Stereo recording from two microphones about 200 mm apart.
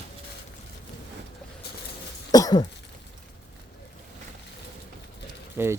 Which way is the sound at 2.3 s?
20° left (ahead or behind).